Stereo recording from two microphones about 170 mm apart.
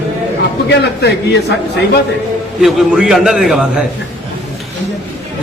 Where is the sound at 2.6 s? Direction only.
Centre (ahead or behind).